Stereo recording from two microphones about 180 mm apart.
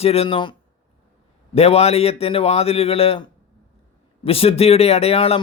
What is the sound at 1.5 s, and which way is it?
Speech, 35° left (ahead or behind).